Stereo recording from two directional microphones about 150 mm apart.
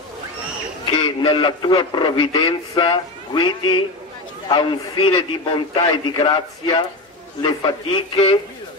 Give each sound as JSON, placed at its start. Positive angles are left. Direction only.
{"t": 0.8, "sound": "a man's voice", "side_deg": 30}